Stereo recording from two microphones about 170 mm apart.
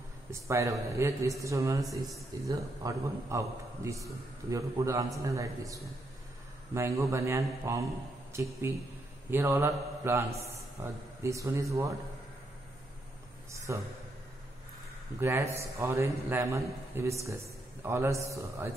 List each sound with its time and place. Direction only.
0.3 s a man's voice: 15° right (ahead or behind)
1.8 s speech: centre (ahead or behind)
2.4 s a man's voice: 20° right (ahead or behind)
13.7 s a man's voice: 15° right (ahead or behind)
15.1 s a man's voice: 15° right (ahead or behind)